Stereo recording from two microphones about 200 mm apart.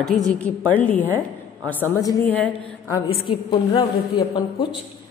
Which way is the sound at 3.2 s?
25° left (ahead or behind).